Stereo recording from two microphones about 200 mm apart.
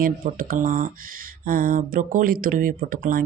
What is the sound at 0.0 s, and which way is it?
Speech, 45° right (ahead or behind).